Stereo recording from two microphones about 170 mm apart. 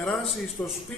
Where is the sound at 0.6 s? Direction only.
15° left (ahead or behind).